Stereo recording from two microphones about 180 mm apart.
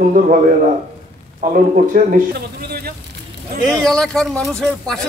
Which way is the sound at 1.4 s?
50° right (ahead or behind).